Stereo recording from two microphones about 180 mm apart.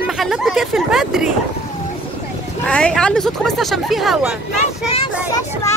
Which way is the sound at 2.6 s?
5° left (ahead or behind).